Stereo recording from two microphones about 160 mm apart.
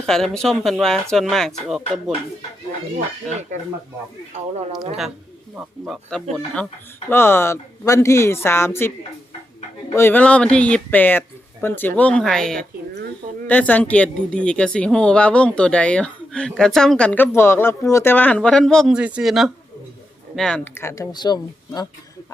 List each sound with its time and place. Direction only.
0.0 s speech: 5° left (ahead or behind)
3.5 s speech: 50° right (ahead or behind)
5.5 s a woman's voice: centre (ahead or behind); by 8.9 s 15° left (ahead or behind)
9.9 s a woman's voice: 15° left (ahead or behind)
20.7 s speech: 15° left (ahead or behind)